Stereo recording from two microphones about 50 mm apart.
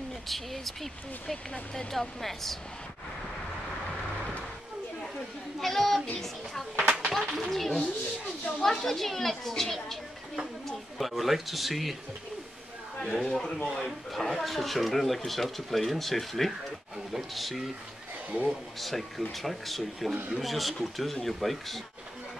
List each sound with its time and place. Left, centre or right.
0.3 s speech: centre
5.6 s speech: centre
7.2 s speech: centre
7.5 s speech: centre
11.0 s speech: centre
13.0 s speech: centre